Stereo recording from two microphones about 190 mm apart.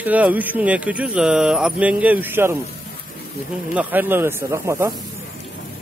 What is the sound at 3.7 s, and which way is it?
Speech, 10° right (ahead or behind).